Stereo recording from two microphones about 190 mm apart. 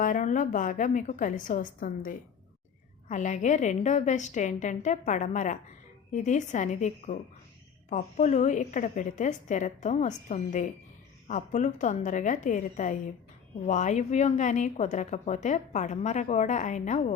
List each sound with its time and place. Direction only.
0.0 s a woman's voice: 40° left (ahead or behind)